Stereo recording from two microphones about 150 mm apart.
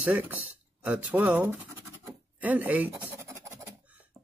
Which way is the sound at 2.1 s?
10° right (ahead or behind).